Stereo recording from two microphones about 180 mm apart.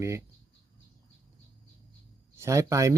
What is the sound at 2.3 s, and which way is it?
Speech, 15° right (ahead or behind).